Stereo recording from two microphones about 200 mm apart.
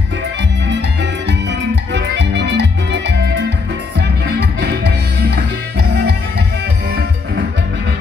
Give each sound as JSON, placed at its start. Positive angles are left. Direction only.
{"t": 1.5, "sound": "music", "side_deg": -60}